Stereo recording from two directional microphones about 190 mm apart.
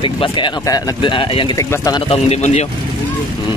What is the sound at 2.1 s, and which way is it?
Speech, 35° left (ahead or behind).